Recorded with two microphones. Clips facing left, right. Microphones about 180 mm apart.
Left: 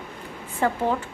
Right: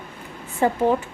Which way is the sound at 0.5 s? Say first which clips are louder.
Right 4 dB; 15° right (ahead or behind).